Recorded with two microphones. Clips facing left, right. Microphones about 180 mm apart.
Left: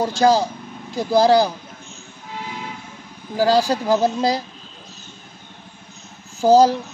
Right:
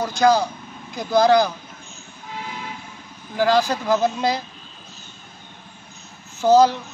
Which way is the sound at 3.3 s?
35° left (ahead or behind).